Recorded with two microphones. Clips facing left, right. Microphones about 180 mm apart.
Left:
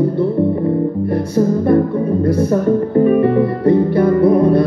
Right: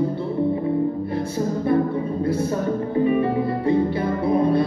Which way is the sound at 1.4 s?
55° left (ahead or behind).